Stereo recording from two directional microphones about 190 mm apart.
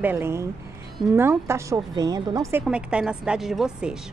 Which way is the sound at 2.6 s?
5° right (ahead or behind).